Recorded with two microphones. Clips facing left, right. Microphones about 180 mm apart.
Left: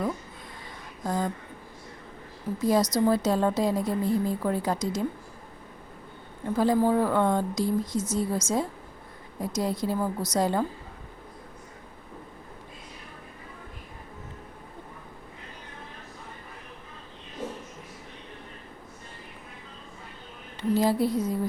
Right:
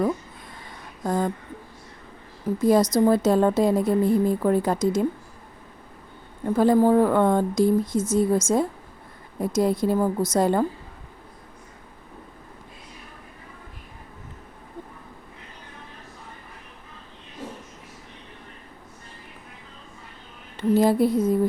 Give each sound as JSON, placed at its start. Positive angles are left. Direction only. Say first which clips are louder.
{"t": 1.0, "sound": "speech", "louder": "right 4 dB", "side_deg": -55}
{"t": 2.6, "sound": "a woman's voice", "louder": "right 5 dB", "side_deg": -55}
{"t": 6.6, "sound": "a woman's voice", "louder": "right 5 dB", "side_deg": -55}
{"t": 20.6, "sound": "a sound", "louder": "right 5 dB", "side_deg": -55}